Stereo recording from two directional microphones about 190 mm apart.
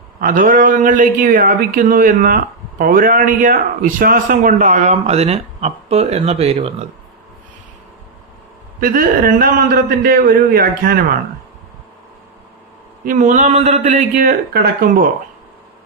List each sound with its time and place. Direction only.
0.2 s a man's voice: 45° right (ahead or behind)
8.8 s a man's voice: 50° right (ahead or behind)
13.1 s a man's voice: 40° right (ahead or behind)